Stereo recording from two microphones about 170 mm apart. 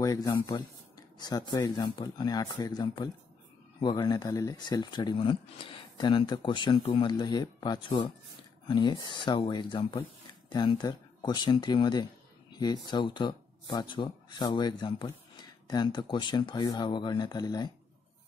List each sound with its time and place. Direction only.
0.0 s speech: 20° left (ahead or behind)